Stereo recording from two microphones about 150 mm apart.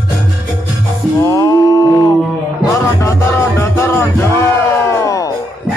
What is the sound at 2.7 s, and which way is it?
Music, 20° left (ahead or behind).